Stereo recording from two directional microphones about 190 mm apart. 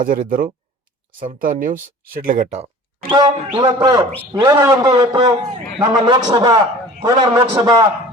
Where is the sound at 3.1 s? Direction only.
20° right (ahead or behind).